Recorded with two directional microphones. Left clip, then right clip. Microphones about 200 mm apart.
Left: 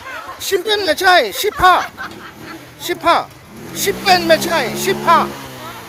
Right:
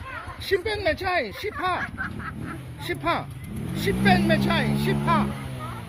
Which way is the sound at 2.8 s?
10° left (ahead or behind).